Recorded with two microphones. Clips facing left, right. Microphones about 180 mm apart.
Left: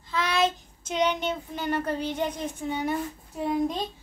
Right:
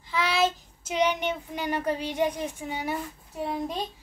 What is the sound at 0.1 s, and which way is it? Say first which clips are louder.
Child singing: even; 10° right (ahead or behind).